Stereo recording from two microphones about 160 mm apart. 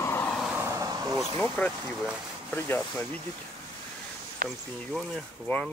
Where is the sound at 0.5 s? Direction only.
15° right (ahead or behind).